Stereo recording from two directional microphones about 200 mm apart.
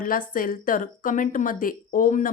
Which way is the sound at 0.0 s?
45° left (ahead or behind).